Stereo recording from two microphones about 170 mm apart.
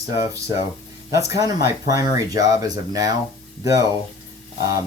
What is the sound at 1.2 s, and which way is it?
Speech, 20° right (ahead or behind).